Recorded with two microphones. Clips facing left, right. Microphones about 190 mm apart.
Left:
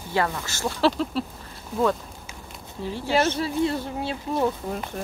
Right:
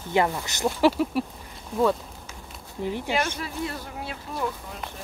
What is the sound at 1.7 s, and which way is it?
Speech, centre (ahead or behind).